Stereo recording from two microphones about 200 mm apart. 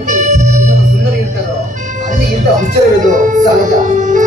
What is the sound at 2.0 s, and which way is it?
Music, 40° right (ahead or behind).